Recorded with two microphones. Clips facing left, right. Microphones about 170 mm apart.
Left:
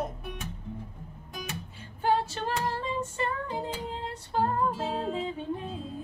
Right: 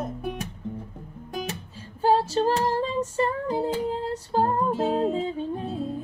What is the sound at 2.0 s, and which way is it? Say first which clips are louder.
Female singing: right 6 dB; 35° right (ahead or behind).